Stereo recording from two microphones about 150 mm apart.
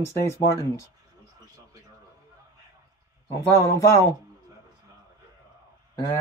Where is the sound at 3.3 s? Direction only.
15° left (ahead or behind).